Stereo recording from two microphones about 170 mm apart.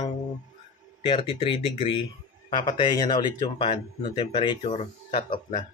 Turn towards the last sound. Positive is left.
turn(degrees=30)  # may be behind; listen again after turning